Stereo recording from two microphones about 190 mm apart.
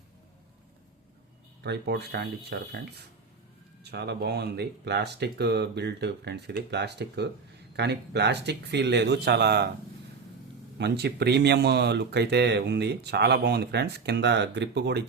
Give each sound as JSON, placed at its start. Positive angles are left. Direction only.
{"t": 1.6, "sound": "speech", "side_deg": -60}
{"t": 3.8, "sound": "speech", "side_deg": -60}
{"t": 10.8, "sound": "speech", "side_deg": -60}